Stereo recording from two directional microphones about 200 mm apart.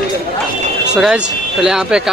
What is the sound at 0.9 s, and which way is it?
Speech, 5° right (ahead or behind).